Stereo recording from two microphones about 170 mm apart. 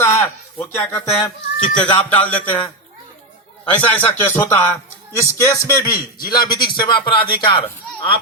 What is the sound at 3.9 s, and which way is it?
Speech, 10° left (ahead or behind).